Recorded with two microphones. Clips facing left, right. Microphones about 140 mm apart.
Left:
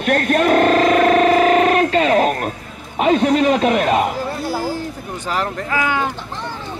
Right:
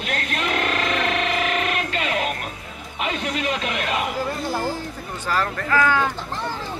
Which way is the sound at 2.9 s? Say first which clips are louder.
Left 12 dB; 40° left (ahead or behind).